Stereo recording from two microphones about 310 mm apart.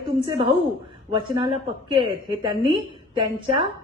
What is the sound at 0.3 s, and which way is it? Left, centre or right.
A woman's voice, centre.